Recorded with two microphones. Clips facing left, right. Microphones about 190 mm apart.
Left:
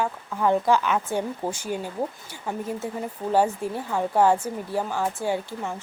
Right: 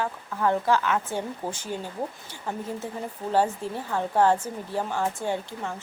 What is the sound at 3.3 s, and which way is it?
Speech, 15° left (ahead or behind).